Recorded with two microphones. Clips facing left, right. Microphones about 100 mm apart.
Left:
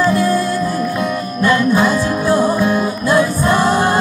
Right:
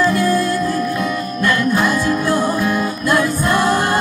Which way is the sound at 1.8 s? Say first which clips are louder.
Left 2 dB; 30° left (ahead or behind).